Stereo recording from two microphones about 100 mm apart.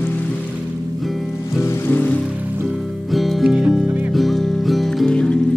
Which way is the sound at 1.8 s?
15° left (ahead or behind).